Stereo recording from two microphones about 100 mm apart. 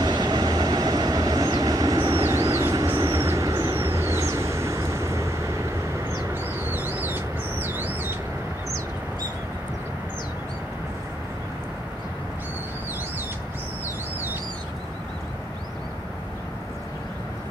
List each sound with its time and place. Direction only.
0.0 s train: 45° right (ahead or behind); by 5.3 s 30° right (ahead or behind)
6.3 s bird: 20° right (ahead or behind)